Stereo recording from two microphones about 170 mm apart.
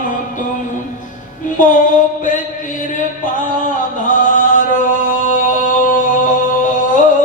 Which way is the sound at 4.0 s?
50° left (ahead or behind).